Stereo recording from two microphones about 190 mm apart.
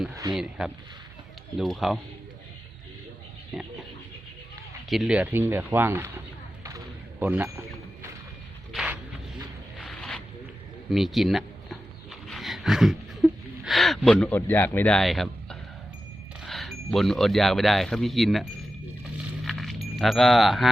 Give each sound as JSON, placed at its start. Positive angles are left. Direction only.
{"t": 0.1, "sound": "speech", "side_deg": -15}
{"t": 0.3, "sound": "speech", "side_deg": 0}
{"t": 4.9, "sound": "speech", "side_deg": -5}
{"t": 8.7, "sound": "a sound", "side_deg": -5}
{"t": 10.9, "sound": "speech", "side_deg": 0}
{"t": 19.5, "sound": "keys jangling", "side_deg": 0}
{"t": 20.0, "sound": "speech", "side_deg": 0}